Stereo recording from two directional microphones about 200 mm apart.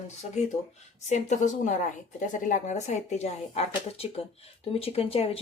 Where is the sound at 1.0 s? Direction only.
35° left (ahead or behind).